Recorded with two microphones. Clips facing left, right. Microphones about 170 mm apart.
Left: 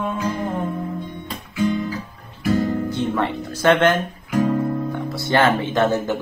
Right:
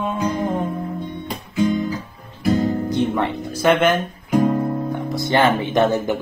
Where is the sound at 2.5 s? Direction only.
20° right (ahead or behind).